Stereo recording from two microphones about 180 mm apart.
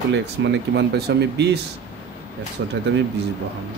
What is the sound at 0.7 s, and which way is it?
Speech, 70° right (ahead or behind).